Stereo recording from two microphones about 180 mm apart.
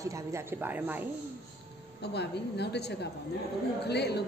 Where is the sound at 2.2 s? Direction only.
70° left (ahead or behind).